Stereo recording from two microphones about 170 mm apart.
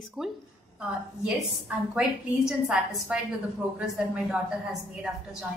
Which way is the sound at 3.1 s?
5° right (ahead or behind).